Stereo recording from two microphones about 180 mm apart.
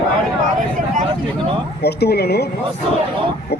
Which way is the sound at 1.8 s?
65° left (ahead or behind).